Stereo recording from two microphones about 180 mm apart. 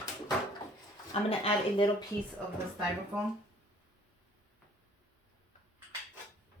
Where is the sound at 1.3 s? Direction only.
30° left (ahead or behind).